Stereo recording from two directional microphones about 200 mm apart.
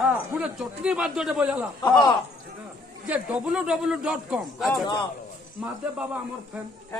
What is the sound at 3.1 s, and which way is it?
A man's voice, 5° right (ahead or behind).